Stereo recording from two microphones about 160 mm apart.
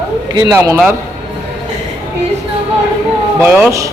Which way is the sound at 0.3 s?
20° right (ahead or behind).